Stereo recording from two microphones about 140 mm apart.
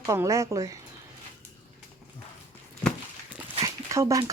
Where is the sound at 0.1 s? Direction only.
20° right (ahead or behind).